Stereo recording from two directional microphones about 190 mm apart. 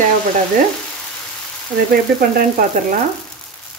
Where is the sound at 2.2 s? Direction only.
50° right (ahead or behind).